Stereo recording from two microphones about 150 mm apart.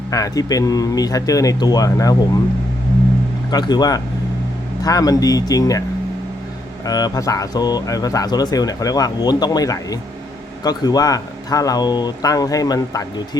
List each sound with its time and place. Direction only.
0.1 s speech: 25° left (ahead or behind)
3.5 s speech: 25° left (ahead or behind)
6.8 s speech: 25° left (ahead or behind)